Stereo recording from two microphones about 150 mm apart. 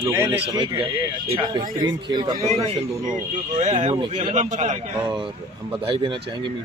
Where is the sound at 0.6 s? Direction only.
35° right (ahead or behind).